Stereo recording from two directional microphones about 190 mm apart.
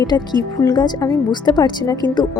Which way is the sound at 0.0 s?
20° left (ahead or behind).